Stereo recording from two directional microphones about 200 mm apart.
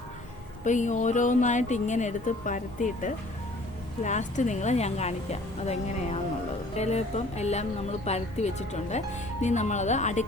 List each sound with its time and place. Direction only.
0.6 s a woman's voice: 40° left (ahead or behind)